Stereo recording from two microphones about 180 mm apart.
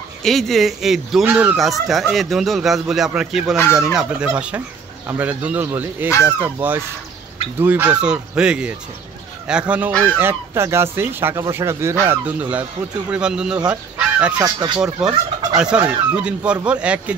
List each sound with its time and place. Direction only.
0.2 s speech: centre (ahead or behind)
13.7 s goose: 5° right (ahead or behind)
14.4 s speech: 25° right (ahead or behind)
14.8 s speech: 5° right (ahead or behind)